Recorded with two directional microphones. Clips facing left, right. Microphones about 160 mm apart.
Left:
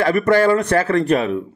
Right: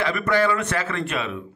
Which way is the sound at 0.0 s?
45° left (ahead or behind).